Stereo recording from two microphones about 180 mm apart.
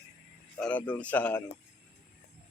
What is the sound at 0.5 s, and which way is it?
Speech, 10° left (ahead or behind).